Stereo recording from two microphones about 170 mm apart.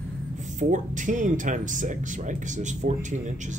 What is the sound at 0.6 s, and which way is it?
A man's voice, 45° right (ahead or behind).